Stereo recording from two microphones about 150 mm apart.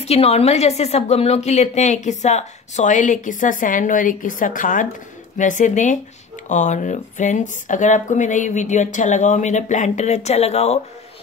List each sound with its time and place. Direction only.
0.0 s a woman's voice: 45° left (ahead or behind)